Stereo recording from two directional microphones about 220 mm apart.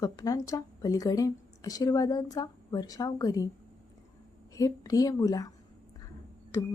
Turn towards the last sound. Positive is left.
turn(degrees=15)  # may be behind; listen again after turning